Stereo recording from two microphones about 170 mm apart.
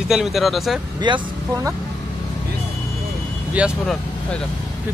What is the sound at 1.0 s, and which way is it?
Speech, 25° right (ahead or behind).